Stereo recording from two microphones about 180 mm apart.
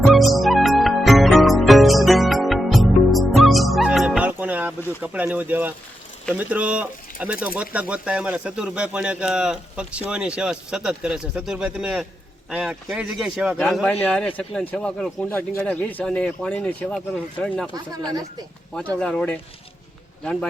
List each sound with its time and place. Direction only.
0.0 s music: centre (ahead or behind)
4.9 s speech: 10° right (ahead or behind); by 17.7 s 5° left (ahead or behind)
17.9 s speech: 20° right (ahead or behind)
18.7 s speech: 5° left (ahead or behind)